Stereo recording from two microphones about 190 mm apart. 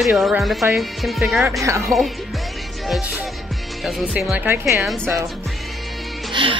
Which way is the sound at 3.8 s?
5° right (ahead or behind).